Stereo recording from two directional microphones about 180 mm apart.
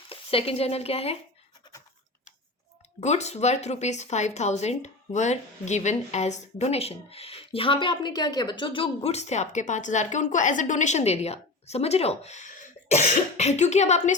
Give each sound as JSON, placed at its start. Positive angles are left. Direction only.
{"t": 0.1, "sound": "speech", "side_deg": 30}
{"t": 1.7, "sound": "scratch", "side_deg": 25}
{"t": 3.0, "sound": "speech", "side_deg": 40}